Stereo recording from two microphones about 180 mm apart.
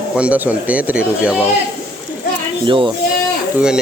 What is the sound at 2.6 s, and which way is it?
Speech, 25° right (ahead or behind).